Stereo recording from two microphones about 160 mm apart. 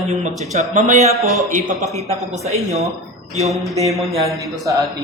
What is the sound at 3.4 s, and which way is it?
Speech, centre (ahead or behind).